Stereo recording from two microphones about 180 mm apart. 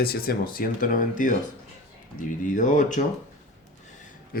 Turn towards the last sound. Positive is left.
turn(degrees=55)  # may be behind; listen again after turning